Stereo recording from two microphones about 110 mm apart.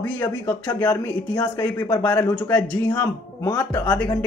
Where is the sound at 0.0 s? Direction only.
25° left (ahead or behind).